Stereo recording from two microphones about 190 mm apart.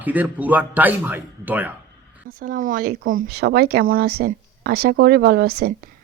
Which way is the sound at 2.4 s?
45° right (ahead or behind).